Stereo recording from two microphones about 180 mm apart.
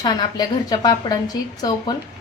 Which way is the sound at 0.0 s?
25° left (ahead or behind).